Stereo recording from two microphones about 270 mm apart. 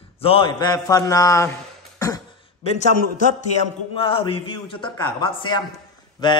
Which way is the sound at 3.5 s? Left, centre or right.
Left.